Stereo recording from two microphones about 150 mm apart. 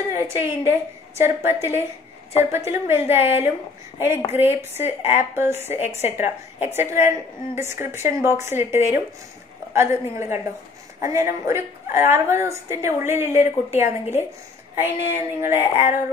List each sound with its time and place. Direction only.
0.1 s a woman's voice: 20° right (ahead or behind)
4.3 s a woman's voice: 15° right (ahead or behind)
5.8 s a woman's voice: 45° left (ahead or behind)
6.0 s a woman's voice: 15° right (ahead or behind)